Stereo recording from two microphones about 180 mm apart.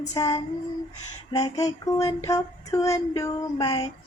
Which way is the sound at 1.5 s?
20° left (ahead or behind).